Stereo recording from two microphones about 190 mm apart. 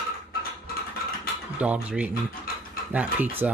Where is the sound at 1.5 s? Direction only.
5° right (ahead or behind).